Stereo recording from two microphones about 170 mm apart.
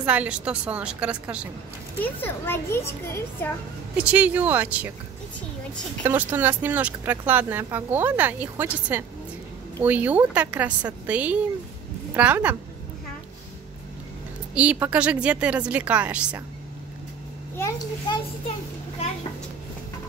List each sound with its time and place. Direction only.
0.0 s speech: 5° right (ahead or behind)
2.0 s a child's voice: 15° left (ahead or behind)
4.0 s speech: 10° right (ahead or behind)
6.0 s a woman's voice: 10° right (ahead or behind)
14.5 s speech: 5° right (ahead or behind)
17.6 s a child's voice: 20° left (ahead or behind)